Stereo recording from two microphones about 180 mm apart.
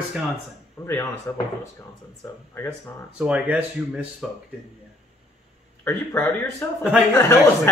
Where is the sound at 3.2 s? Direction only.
5° right (ahead or behind).